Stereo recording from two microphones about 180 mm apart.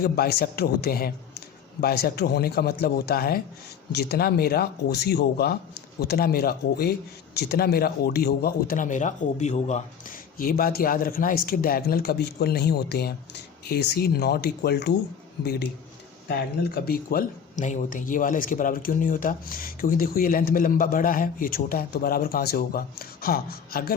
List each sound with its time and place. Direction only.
0.0 s speech: 60° left (ahead or behind); by 9.8 s 40° left (ahead or behind)
10.3 s speech: 55° left (ahead or behind)